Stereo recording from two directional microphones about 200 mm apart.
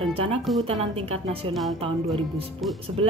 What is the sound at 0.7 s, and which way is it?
Speech, 30° right (ahead or behind).